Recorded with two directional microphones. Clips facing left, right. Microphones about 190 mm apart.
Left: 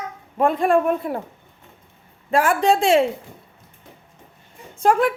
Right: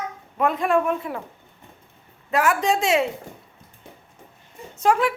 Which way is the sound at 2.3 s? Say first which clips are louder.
Left 3 dB; 30° left (ahead or behind).